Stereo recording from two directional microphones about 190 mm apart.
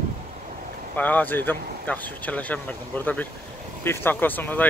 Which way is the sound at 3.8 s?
10° left (ahead or behind).